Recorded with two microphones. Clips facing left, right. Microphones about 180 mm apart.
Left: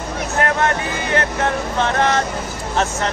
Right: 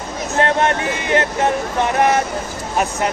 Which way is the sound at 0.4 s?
25° right (ahead or behind).